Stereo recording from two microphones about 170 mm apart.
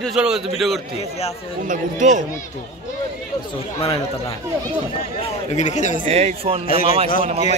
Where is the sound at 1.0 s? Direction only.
40° left (ahead or behind).